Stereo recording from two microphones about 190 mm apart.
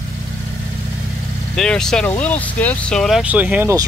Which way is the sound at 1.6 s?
5° left (ahead or behind).